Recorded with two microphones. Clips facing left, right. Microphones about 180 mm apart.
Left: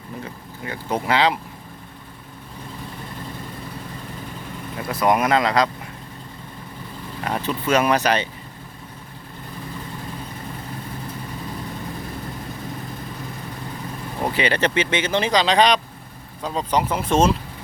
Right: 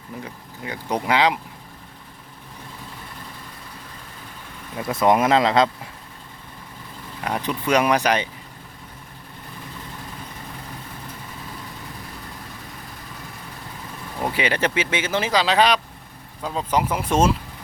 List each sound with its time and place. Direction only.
0.6 s speech: 15° right (ahead or behind)
4.9 s speech: 25° right (ahead or behind)
7.3 s speech: 15° right (ahead or behind)
14.3 s speech: 10° right (ahead or behind)